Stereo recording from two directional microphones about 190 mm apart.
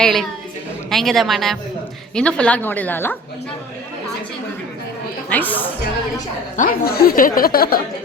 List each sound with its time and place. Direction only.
0.0 s a woman's voice: centre (ahead or behind)
5.3 s a woman's voice: 10° left (ahead or behind)
6.6 s speech: 50° left (ahead or behind)